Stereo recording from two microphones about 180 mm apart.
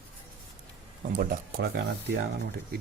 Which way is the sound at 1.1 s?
60° right (ahead or behind).